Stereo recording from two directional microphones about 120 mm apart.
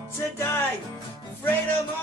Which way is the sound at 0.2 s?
20° left (ahead or behind).